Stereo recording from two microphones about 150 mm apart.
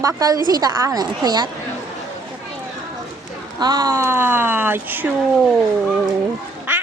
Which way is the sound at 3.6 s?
25° right (ahead or behind).